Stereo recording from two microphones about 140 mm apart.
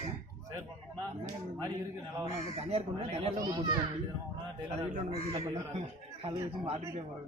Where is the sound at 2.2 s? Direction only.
45° right (ahead or behind).